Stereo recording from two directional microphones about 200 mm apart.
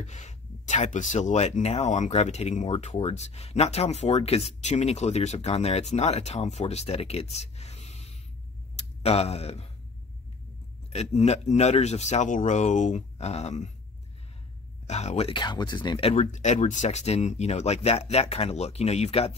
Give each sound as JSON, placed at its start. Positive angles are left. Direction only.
{"t": 0.0, "sound": "speech", "side_deg": 35}
{"t": 10.9, "sound": "speech", "side_deg": 30}
{"t": 14.9, "sound": "speech", "side_deg": 35}